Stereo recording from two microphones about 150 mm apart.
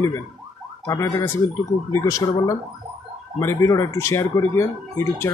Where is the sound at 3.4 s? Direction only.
20° left (ahead or behind).